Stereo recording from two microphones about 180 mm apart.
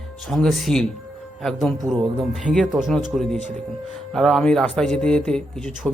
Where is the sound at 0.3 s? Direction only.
Centre (ahead or behind).